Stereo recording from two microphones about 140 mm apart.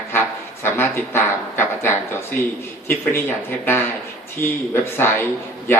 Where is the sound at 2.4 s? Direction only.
75° left (ahead or behind).